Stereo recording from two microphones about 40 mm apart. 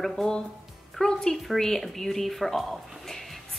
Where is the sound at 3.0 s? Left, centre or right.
Centre.